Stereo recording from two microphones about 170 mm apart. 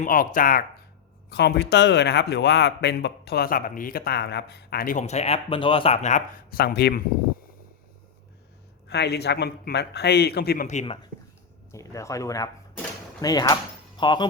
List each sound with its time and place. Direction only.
0.0 s speech: 55° left (ahead or behind)
1.3 s a man's voice: 75° left (ahead or behind); by 6.2 s 45° left (ahead or behind)
6.5 s speech: 60° left (ahead or behind)
8.9 s a man's voice: 75° left (ahead or behind)
10.7 s speech: 40° left (ahead or behind)
11.7 s speech: 20° left (ahead or behind)